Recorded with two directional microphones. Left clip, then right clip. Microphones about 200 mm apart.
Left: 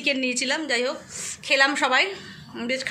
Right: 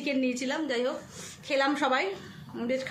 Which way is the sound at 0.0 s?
10° right (ahead or behind).